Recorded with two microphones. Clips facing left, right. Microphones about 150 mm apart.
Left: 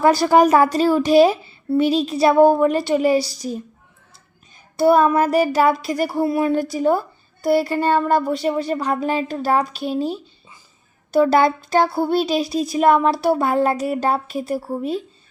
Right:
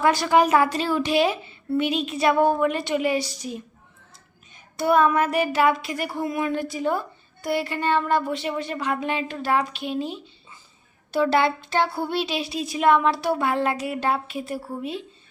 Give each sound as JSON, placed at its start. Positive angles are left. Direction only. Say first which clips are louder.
{"t": 0.0, "sound": "speech", "louder": "left 5 dB", "side_deg": 35}
{"t": 4.8, "sound": "speech", "louder": "left 5 dB", "side_deg": 35}